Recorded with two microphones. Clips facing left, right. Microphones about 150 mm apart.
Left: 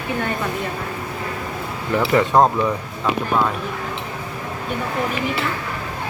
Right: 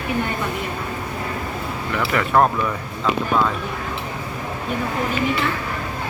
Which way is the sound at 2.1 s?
20° left (ahead or behind).